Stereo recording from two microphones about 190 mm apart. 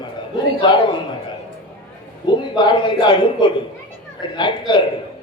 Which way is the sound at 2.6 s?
25° left (ahead or behind).